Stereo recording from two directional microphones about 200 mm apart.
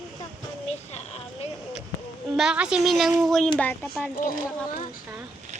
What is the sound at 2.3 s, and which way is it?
A woman's voice, 5° right (ahead or behind).